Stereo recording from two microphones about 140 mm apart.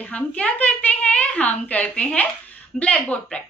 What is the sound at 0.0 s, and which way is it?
A woman's voice, 10° left (ahead or behind).